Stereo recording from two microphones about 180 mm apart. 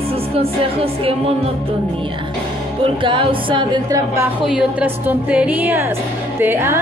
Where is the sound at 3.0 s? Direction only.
30° right (ahead or behind).